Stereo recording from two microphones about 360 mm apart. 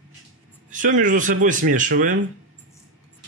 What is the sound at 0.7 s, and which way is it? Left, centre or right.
Speech, right.